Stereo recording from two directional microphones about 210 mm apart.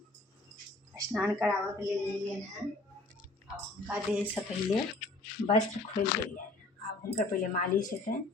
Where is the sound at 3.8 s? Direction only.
5° right (ahead or behind).